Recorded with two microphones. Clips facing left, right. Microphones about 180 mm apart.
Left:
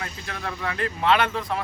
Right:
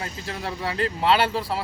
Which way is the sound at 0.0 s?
30° right (ahead or behind).